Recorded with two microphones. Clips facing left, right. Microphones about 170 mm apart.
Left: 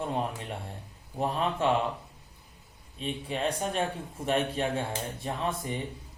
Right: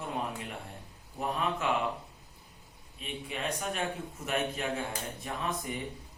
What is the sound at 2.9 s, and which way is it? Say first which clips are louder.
Speech: left 6 dB; 30° left (ahead or behind).